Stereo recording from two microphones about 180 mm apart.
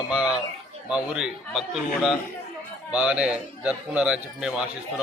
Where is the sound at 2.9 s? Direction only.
5° right (ahead or behind).